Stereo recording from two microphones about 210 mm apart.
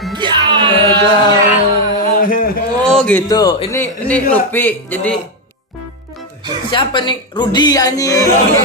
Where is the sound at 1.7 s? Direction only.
40° left (ahead or behind).